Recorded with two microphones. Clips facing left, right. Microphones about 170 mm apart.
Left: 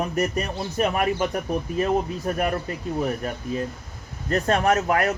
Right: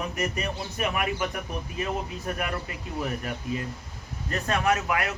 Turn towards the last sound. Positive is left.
turn(degrees=40)  # may be behind; listen again after turning